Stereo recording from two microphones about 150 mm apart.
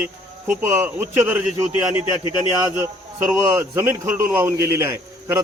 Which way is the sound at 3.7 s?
15° right (ahead or behind).